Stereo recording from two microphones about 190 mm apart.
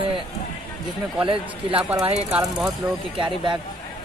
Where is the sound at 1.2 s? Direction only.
25° right (ahead or behind).